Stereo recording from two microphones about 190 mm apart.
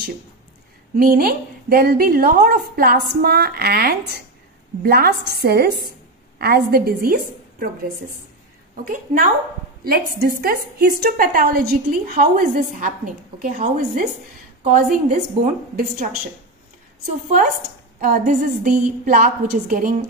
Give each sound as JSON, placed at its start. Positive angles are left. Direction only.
{"t": 0.9, "sound": "a woman's voice", "side_deg": -50}
{"t": 8.8, "sound": "a woman's voice", "side_deg": -45}
{"t": 18.0, "sound": "a woman's voice", "side_deg": -45}